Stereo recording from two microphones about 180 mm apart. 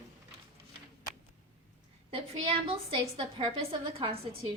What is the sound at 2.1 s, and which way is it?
A woman's voice, 30° right (ahead or behind).